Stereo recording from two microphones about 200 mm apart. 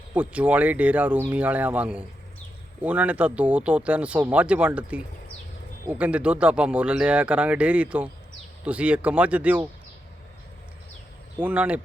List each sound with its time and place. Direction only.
0.1 s speech: 10° right (ahead or behind)
11.3 s speech: 5° right (ahead or behind)